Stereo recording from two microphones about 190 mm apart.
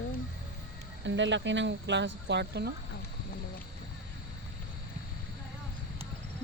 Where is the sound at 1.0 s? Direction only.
75° right (ahead or behind).